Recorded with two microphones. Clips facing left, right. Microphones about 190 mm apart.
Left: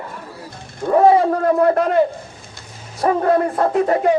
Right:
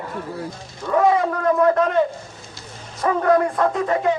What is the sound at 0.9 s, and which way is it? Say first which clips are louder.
A man's voice: left 5 dB; 30° left (ahead or behind).